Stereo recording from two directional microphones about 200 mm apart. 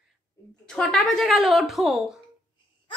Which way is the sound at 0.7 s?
5° left (ahead or behind).